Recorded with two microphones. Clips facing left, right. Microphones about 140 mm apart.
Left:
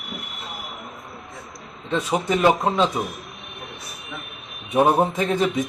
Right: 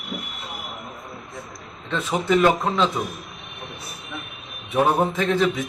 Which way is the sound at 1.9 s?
15° left (ahead or behind).